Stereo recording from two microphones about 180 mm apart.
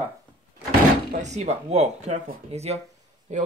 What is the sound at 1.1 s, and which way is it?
Speech, 40° right (ahead or behind).